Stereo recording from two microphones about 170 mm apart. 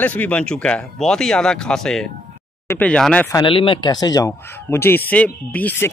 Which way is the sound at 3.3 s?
30° left (ahead or behind).